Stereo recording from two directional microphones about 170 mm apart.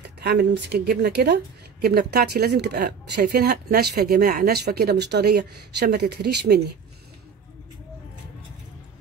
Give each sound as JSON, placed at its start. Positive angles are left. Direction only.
{"t": 0.2, "sound": "a woman's voice", "side_deg": -70}